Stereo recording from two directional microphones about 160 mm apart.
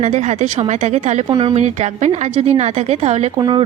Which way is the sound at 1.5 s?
45° right (ahead or behind).